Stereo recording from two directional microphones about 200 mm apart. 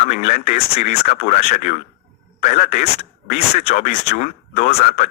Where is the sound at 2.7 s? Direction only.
30° left (ahead or behind).